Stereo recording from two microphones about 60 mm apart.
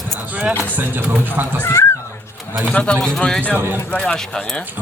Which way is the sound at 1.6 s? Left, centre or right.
Left.